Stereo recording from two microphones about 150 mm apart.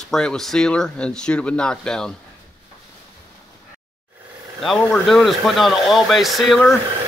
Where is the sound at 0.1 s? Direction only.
5° left (ahead or behind).